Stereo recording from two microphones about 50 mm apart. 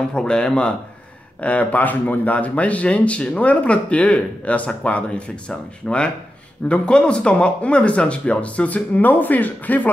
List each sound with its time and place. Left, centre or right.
0.1 s speech: centre
1.4 s speech: left